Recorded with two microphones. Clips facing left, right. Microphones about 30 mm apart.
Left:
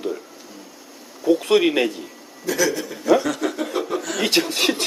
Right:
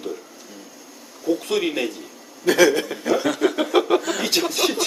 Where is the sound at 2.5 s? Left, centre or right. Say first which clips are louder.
Right 5 dB; right.